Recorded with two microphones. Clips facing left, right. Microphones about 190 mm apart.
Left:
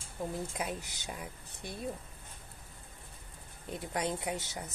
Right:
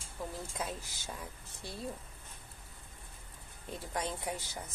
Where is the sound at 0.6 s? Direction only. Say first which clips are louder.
Left 2 dB; 15° left (ahead or behind).